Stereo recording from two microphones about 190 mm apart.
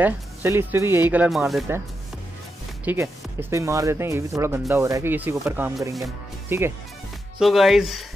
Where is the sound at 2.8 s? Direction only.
10° right (ahead or behind).